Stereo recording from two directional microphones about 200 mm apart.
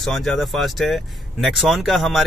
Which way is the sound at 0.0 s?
Centre (ahead or behind).